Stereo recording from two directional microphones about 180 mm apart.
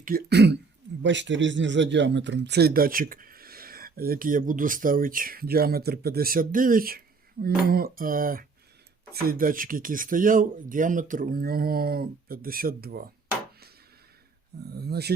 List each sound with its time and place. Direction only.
0.0 s speech: 55° right (ahead or behind)
1.0 s speech: 90° right; by 13.0 s 55° right (ahead or behind)
14.6 s speech: 65° right (ahead or behind)